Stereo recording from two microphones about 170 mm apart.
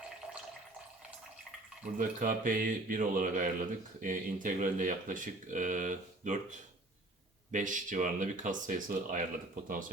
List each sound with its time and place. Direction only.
2.0 s speech: 50° right (ahead or behind)